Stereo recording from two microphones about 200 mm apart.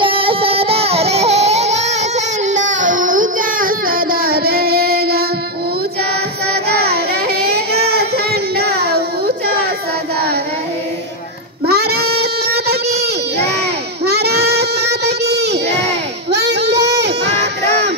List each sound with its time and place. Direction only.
0.0 s baby cry: 25° right (ahead or behind); by 5.2 s 50° right (ahead or behind)
6.5 s child singing: 50° right (ahead or behind)
11.6 s child singing: 50° right (ahead or behind)
16.3 s baby cry: 55° right (ahead or behind)